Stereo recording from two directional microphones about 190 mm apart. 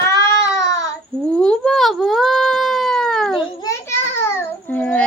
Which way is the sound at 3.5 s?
15° left (ahead or behind).